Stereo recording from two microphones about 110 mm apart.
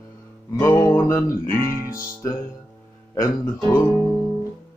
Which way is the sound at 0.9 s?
20° left (ahead or behind).